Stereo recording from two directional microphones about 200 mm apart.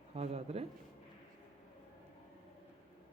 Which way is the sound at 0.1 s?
30° right (ahead or behind).